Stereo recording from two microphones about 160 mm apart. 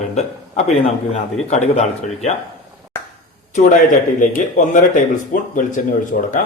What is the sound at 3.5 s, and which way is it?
A man's voice, 55° left (ahead or behind).